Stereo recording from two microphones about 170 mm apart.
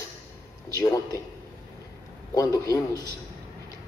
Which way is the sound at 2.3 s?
20° left (ahead or behind).